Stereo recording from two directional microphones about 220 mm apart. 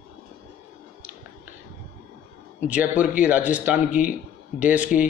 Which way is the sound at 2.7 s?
5° right (ahead or behind).